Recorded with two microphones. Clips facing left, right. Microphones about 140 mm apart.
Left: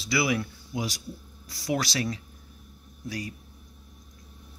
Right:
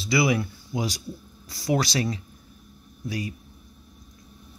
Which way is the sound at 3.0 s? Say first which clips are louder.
Right 4 dB; 10° right (ahead or behind).